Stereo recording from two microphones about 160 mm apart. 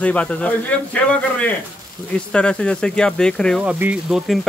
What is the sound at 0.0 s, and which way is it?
Speech, 10° left (ahead or behind).